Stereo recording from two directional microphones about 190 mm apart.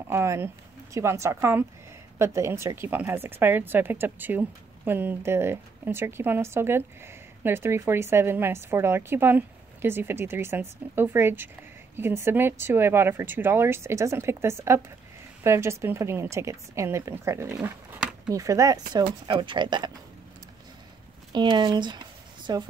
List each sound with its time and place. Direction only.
0.1 s speech: 15° right (ahead or behind)
21.3 s speech: 25° right (ahead or behind)